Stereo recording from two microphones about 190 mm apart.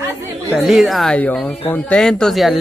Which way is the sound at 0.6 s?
Centre (ahead or behind).